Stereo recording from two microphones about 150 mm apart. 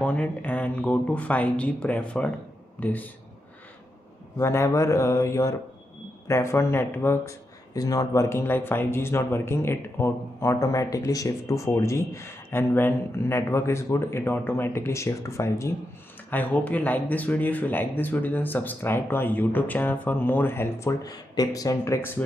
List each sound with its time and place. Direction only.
0.0 s speech: 10° left (ahead or behind)
4.4 s mantra: 20° left (ahead or behind)
6.2 s speech: 20° left (ahead or behind)